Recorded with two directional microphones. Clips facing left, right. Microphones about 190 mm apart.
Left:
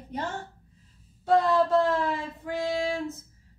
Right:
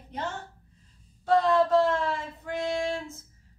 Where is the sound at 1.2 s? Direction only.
Centre (ahead or behind).